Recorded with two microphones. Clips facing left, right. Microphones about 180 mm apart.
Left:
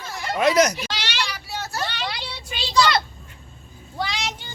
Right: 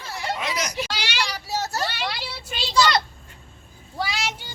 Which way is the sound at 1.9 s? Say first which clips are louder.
Even; 5° right (ahead or behind).